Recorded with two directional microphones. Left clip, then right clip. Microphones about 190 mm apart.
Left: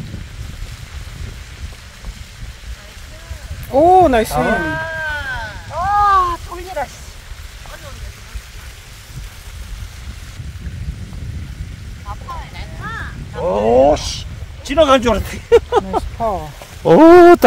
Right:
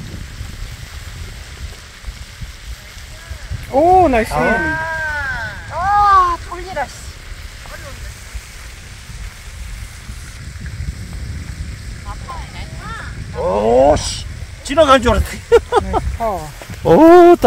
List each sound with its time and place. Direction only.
3.7 s speech: 20° left (ahead or behind)
4.3 s speech: 35° right (ahead or behind)
4.6 s a sound: 35° left (ahead or behind)
5.7 s a sound: 20° right (ahead or behind)
13.5 s speech: centre (ahead or behind)
17.1 s speech: 30° left (ahead or behind)